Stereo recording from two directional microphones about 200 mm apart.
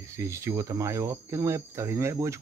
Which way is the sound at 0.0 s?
15° right (ahead or behind).